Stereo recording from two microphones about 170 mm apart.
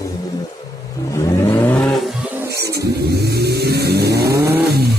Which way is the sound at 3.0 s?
70° right (ahead or behind).